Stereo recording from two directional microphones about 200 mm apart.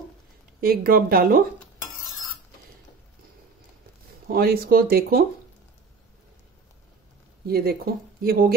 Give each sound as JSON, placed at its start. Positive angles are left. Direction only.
{"t": 0.6, "sound": "speech", "side_deg": -50}
{"t": 4.3, "sound": "speech", "side_deg": -50}
{"t": 7.4, "sound": "speech", "side_deg": -50}